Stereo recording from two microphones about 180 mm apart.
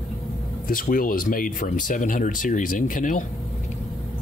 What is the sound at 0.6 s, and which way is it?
Speech, 50° left (ahead or behind).